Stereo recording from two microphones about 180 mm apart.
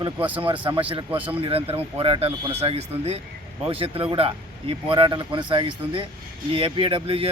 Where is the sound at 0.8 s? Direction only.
30° right (ahead or behind).